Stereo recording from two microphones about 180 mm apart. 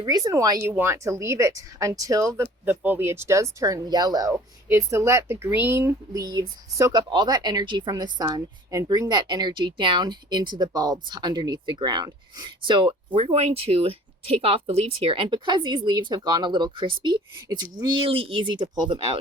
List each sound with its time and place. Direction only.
0.0 s speech: 20° right (ahead or behind)